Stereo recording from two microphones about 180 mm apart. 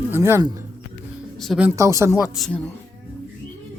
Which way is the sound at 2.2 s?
Centre (ahead or behind).